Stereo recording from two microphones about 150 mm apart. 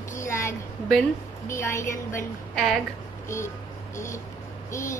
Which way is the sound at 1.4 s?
20° left (ahead or behind).